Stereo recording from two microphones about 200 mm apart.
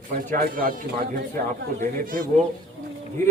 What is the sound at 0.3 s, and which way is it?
Speech, 45° right (ahead or behind).